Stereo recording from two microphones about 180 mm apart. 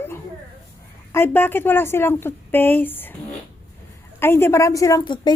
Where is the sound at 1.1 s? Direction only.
10° left (ahead or behind).